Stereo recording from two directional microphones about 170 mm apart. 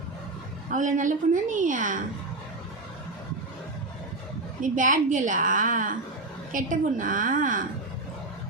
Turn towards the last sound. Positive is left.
turn(degrees=-50)  # may be behind; listen again after turning